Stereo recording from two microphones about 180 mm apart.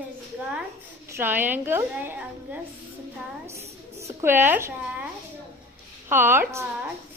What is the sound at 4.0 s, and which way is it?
A woman's voice, 15° right (ahead or behind).